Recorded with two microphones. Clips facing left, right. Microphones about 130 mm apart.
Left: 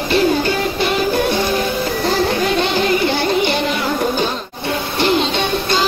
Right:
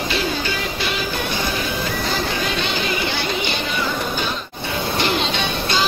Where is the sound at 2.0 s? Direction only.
45° left (ahead or behind).